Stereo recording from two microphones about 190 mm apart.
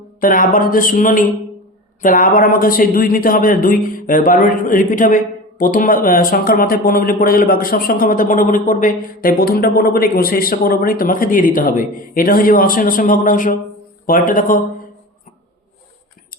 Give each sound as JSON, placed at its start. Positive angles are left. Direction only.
{"t": 0.2, "sound": "a man's voice", "side_deg": 45}